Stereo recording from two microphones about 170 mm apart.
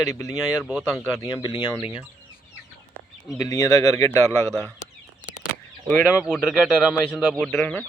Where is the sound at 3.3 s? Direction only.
20° left (ahead or behind).